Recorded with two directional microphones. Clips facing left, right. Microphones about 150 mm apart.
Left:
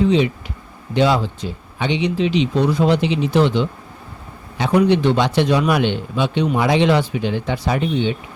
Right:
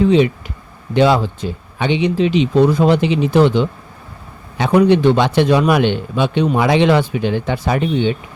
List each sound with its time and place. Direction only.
0.9 s a man's voice: 55° right (ahead or behind)